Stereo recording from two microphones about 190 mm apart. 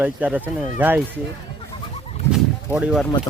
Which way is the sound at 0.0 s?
10° right (ahead or behind).